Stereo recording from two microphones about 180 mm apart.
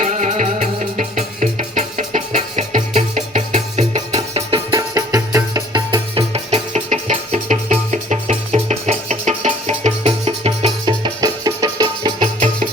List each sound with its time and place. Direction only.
0.0 s music: 40° right (ahead or behind)
4.8 s music: 15° right (ahead or behind)
12.2 s music: 45° right (ahead or behind)